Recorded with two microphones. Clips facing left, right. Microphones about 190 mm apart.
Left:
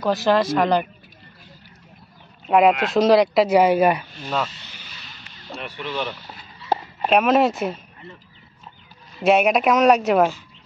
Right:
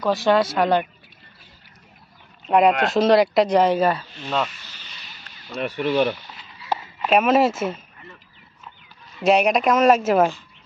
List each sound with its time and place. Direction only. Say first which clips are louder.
0.0 s speech: even; centre (ahead or behind)
2.4 s speech: left 1 dB; centre (ahead or behind)
5.5 s speech: right 8 dB; 45° right (ahead or behind)
7.1 s speech: even; centre (ahead or behind)
9.2 s speech: left 1 dB; centre (ahead or behind)